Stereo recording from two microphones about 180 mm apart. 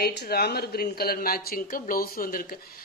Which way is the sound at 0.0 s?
60° left (ahead or behind).